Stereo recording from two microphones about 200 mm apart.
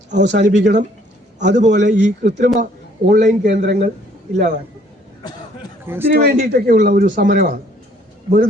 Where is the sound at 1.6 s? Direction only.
60° right (ahead or behind).